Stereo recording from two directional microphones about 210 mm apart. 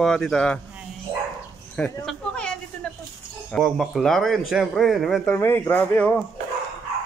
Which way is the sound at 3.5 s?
Centre (ahead or behind).